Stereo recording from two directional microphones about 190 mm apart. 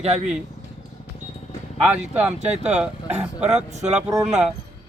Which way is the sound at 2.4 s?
35° right (ahead or behind).